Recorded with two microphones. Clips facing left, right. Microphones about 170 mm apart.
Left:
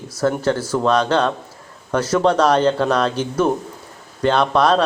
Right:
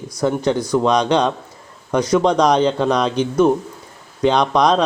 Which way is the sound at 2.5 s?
5° left (ahead or behind).